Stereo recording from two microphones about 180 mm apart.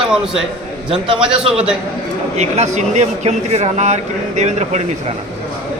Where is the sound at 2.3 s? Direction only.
40° right (ahead or behind).